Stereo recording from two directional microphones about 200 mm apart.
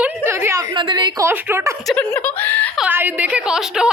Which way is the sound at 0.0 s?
10° right (ahead or behind).